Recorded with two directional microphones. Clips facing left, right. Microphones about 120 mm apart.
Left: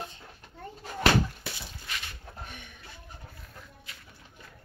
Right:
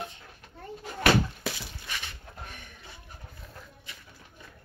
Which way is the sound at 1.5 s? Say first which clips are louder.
Right 6 dB; 90° right.